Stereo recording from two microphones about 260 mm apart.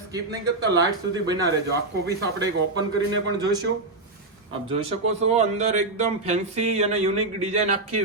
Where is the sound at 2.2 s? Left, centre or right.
Right.